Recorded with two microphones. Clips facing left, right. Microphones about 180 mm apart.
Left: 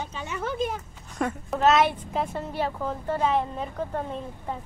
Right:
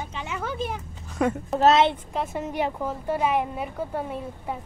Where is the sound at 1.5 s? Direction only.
30° right (ahead or behind).